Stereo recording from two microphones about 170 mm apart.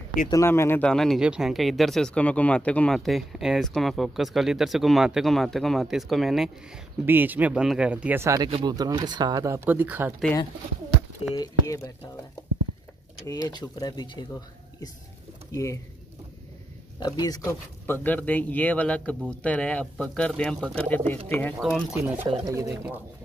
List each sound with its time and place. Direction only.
0.3 s speech: 15° left (ahead or behind); by 8.5 s 15° right (ahead or behind)
8.5 s speech: 25° right (ahead or behind)
9.7 s speech: 10° right (ahead or behind)
11.3 s speech: 20° left (ahead or behind)
13.3 s speech: 25° left (ahead or behind)
15.5 s speech: 20° left (ahead or behind)
17.0 s speech: 20° left (ahead or behind)
21.5 s speech: centre (ahead or behind)
22.0 s speech: 15° right (ahead or behind)